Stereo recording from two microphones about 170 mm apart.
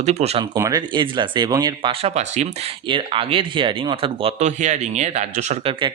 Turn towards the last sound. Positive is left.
turn(degrees=-40)  # may be behind; listen again after turning